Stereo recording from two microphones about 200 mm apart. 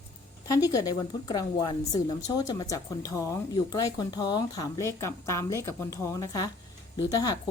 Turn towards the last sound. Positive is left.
turn(degrees=20)  # may be behind; listen again after turning